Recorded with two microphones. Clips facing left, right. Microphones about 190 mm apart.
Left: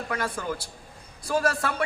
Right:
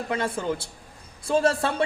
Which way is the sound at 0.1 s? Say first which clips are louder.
Right 4 dB; 25° right (ahead or behind).